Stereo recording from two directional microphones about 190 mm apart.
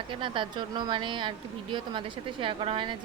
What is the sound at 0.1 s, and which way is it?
A woman's voice, 25° right (ahead or behind).